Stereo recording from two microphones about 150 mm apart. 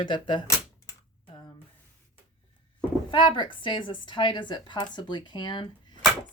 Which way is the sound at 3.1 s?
30° left (ahead or behind).